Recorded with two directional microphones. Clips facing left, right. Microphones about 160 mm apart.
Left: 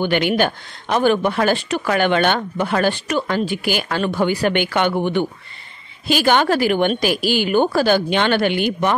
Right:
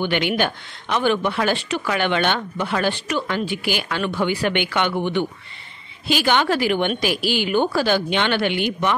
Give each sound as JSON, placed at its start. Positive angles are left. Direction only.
{"t": 0.0, "sound": "speech", "side_deg": 45}